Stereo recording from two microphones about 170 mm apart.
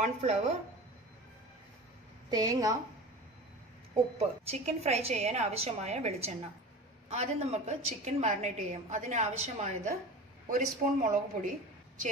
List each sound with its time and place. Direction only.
0.0 s a woman's voice: 40° right (ahead or behind)
2.3 s a woman's voice: 20° right (ahead or behind)
4.2 s a woman's voice: 35° right (ahead or behind)